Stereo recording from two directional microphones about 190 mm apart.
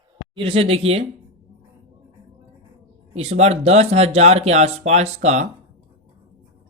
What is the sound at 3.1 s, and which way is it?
A man's voice, 35° right (ahead or behind).